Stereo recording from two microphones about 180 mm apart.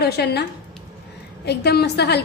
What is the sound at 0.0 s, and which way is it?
Speech, 65° left (ahead or behind).